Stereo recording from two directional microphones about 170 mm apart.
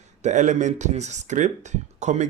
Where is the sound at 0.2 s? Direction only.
45° right (ahead or behind).